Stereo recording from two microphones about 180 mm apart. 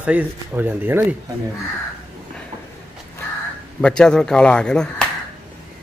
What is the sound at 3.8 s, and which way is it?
A man's voice, 5° left (ahead or behind).